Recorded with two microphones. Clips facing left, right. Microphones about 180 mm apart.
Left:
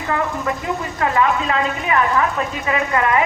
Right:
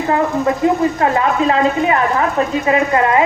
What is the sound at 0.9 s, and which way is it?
A woman's voice, 30° right (ahead or behind).